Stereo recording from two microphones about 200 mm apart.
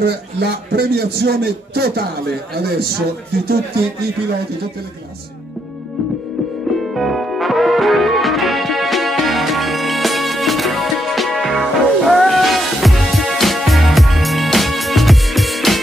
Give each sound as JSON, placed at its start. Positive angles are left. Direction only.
{"t": 0.0, "sound": "a man's voice", "side_deg": -55}
{"t": 6.8, "sound": "music", "side_deg": 0}